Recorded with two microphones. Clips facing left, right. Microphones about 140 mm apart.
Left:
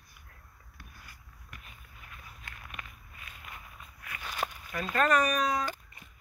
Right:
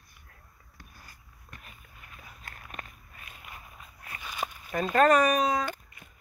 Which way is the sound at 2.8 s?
45° right (ahead or behind).